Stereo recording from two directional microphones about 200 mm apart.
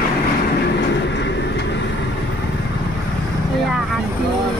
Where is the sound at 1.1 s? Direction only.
60° left (ahead or behind).